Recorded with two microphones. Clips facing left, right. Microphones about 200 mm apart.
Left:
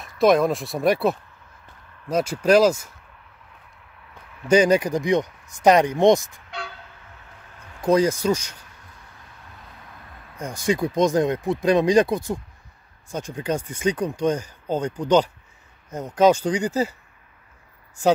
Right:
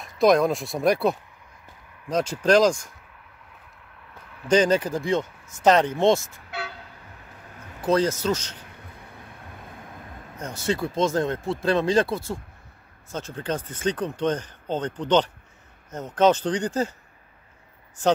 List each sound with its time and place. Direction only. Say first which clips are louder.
0.0 s speech: left 1 dB; centre (ahead or behind)
4.5 s speech: left 3 dB; 10° left (ahead or behind)
7.8 s speech: left 3 dB; 10° left (ahead or behind)
8.6 s vehicle: right 5 dB; 55° right (ahead or behind)
10.4 s speech: left 3 dB; 15° left (ahead or behind)